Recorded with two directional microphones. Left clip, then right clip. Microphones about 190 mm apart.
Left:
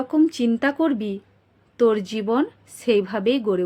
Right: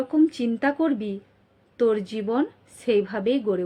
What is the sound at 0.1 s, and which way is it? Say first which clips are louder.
A woman's voice: left 3 dB; 20° left (ahead or behind).